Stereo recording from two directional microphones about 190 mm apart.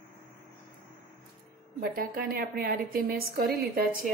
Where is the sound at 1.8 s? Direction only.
55° right (ahead or behind).